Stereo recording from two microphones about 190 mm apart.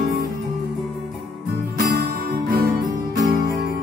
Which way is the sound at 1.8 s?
55° right (ahead or behind).